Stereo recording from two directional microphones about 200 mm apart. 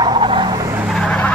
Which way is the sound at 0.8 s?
Centre (ahead or behind).